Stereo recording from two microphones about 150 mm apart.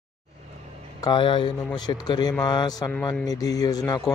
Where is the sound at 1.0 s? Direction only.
35° left (ahead or behind).